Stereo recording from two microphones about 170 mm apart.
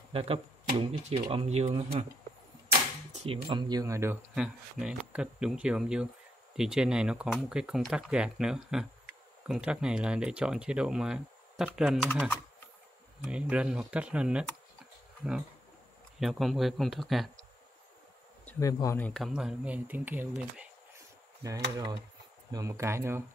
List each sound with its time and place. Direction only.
0.1 s speech: 35° right (ahead or behind)
3.1 s speech: 30° right (ahead or behind); by 4.2 s 15° right (ahead or behind)
4.4 s speech: 5° right (ahead or behind)
13.2 s speech: 5° right (ahead or behind)
16.2 s speech: centre (ahead or behind)
18.4 s a sound: 10° left (ahead or behind)
18.7 s speech: 20° left (ahead or behind); by 20.6 s 10° right (ahead or behind)
22.5 s speech: 20° right (ahead or behind)